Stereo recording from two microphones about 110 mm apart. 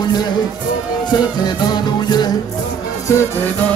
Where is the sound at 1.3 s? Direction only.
40° left (ahead or behind).